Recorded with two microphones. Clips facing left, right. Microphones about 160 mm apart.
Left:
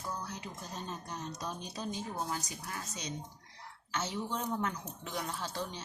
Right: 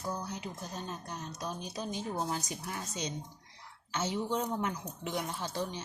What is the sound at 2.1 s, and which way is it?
A woman's voice, 25° right (ahead or behind).